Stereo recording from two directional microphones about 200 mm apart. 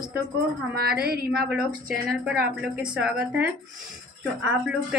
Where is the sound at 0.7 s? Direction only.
50° right (ahead or behind).